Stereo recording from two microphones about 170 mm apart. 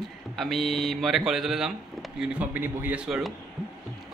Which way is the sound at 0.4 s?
Centre (ahead or behind).